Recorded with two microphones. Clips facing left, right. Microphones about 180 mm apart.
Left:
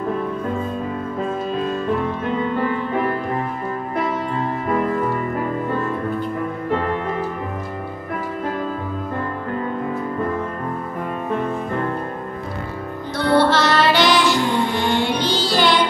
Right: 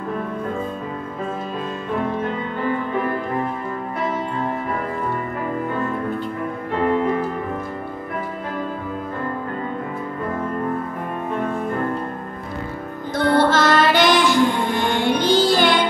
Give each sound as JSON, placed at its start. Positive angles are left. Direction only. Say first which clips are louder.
{"t": 13.1, "sound": "music", "louder": "even", "side_deg": -50}